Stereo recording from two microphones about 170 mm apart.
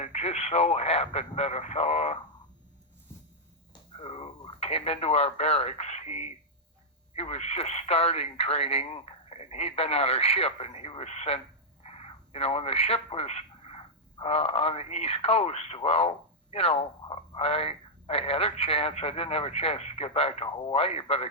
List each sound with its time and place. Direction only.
0.0 s speech: 40° left (ahead or behind)
3.7 s a sound: 35° left (ahead or behind)
7.1 s speech: 40° left (ahead or behind)